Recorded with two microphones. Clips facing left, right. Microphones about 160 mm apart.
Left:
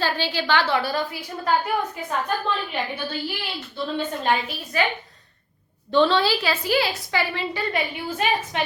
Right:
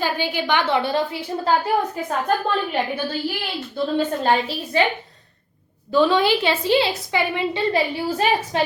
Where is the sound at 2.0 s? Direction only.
45° right (ahead or behind).